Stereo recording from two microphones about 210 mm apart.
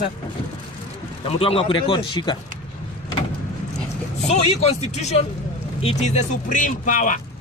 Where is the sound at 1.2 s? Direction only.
25° left (ahead or behind).